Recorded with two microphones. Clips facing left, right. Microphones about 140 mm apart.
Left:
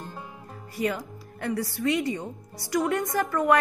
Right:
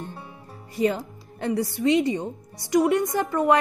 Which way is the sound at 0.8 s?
25° right (ahead or behind).